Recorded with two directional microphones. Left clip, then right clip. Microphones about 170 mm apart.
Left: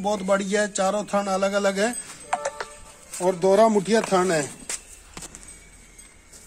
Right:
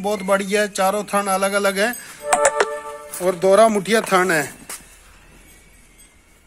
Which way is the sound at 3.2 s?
10° right (ahead or behind).